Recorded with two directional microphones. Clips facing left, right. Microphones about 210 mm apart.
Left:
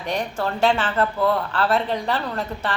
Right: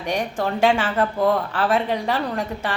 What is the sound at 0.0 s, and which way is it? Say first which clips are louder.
A woman's voice: right 1 dB; 10° right (ahead or behind).